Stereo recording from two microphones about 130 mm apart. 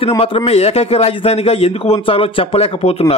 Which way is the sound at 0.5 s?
50° left (ahead or behind).